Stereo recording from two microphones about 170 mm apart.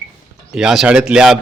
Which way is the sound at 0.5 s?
5° right (ahead or behind).